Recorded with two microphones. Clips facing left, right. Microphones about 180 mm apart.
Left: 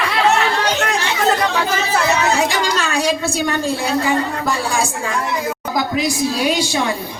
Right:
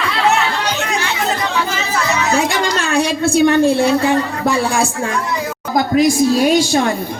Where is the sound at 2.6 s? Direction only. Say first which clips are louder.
Right 3 dB; 60° right (ahead or behind).